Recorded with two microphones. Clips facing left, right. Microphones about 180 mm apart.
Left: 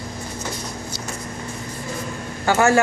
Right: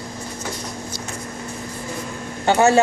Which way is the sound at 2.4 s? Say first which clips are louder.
Right 1 dB; 20° right (ahead or behind).